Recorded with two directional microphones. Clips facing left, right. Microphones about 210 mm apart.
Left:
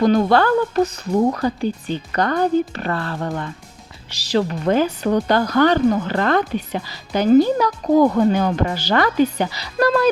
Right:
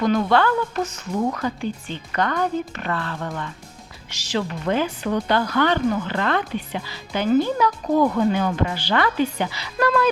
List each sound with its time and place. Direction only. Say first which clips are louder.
0.0 s speech: left 4 dB; 35° left (ahead or behind)